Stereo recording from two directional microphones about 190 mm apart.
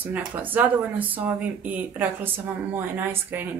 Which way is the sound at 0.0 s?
10° right (ahead or behind).